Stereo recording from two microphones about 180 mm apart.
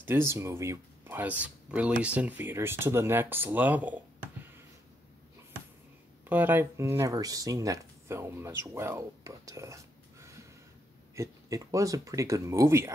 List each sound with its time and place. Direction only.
0.0 s speech: 10° right (ahead or behind)
6.2 s speech: 10° right (ahead or behind)